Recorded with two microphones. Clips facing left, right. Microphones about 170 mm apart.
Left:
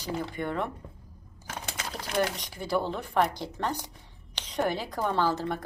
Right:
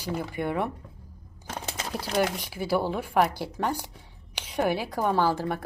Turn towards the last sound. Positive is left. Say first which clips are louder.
# right 2 dB
turn(degrees=-10)  # may be behind; listen again after turning